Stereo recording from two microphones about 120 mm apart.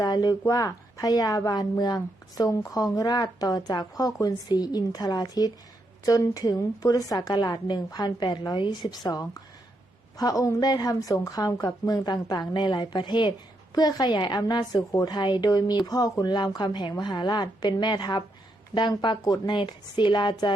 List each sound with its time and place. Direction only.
0.0 s a woman's voice: 35° left (ahead or behind)